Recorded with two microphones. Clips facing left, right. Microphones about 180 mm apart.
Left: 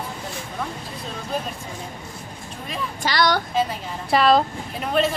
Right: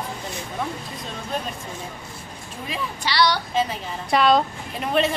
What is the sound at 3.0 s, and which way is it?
Speech, 50° left (ahead or behind).